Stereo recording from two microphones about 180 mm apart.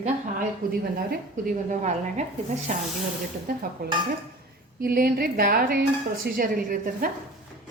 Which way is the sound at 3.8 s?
55° right (ahead or behind).